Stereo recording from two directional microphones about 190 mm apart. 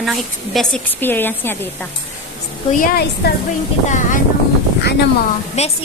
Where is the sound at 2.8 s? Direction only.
50° left (ahead or behind).